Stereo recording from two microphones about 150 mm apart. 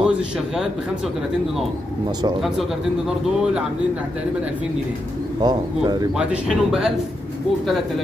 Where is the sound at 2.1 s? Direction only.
30° right (ahead or behind).